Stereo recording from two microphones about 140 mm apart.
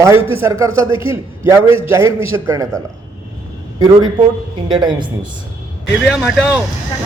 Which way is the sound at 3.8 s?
35° right (ahead or behind).